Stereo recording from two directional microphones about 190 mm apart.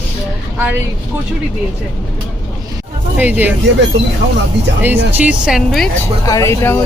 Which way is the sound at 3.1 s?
10° right (ahead or behind).